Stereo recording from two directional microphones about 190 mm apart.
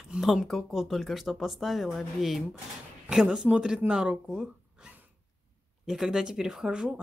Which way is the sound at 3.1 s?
5° right (ahead or behind).